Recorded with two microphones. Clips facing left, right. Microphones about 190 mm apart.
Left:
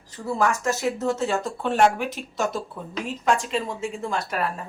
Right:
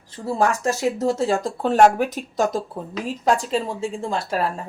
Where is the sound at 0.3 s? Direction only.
30° right (ahead or behind).